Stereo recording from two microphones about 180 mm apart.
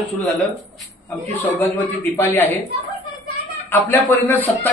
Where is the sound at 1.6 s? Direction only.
10° left (ahead or behind).